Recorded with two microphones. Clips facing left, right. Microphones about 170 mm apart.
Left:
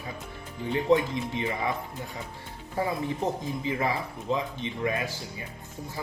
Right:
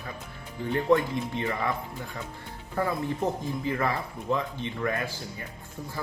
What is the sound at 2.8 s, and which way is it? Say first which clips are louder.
Speech: right 1 dB; 15° left (ahead or behind).